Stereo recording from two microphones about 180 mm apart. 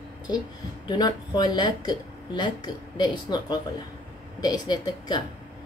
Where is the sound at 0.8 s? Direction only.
20° left (ahead or behind).